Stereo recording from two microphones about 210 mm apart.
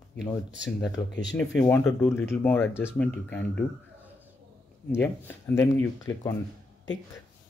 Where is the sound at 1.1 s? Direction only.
55° left (ahead or behind).